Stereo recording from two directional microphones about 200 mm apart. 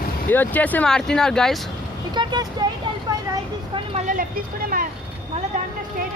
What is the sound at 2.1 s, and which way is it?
Speech, 20° right (ahead or behind).